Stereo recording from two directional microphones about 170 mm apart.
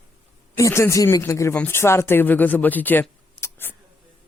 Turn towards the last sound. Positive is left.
turn(degrees=10)  # may be behind; listen again after turning